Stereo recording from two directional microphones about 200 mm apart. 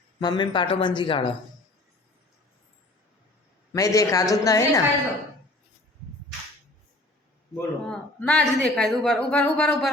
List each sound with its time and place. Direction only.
0.2 s speech: 20° left (ahead or behind)
3.7 s speech: 15° left (ahead or behind)
7.5 s speech: 5° left (ahead or behind)